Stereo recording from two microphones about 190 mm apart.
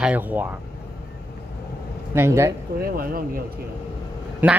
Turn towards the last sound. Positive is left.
turn(degrees=-10)  # may be behind; listen again after turning